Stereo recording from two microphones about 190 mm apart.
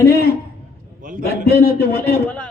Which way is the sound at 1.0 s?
45° right (ahead or behind).